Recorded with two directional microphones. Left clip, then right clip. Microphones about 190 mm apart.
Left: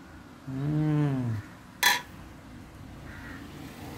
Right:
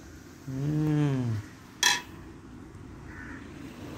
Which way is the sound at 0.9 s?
20° right (ahead or behind).